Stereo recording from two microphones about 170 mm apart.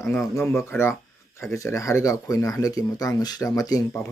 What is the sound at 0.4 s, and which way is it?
Speech, 15° left (ahead or behind).